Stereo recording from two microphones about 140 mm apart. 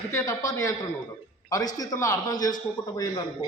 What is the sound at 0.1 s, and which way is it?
A man's voice, 25° left (ahead or behind).